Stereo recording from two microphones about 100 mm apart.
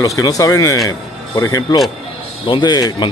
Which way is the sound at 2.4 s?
50° left (ahead or behind).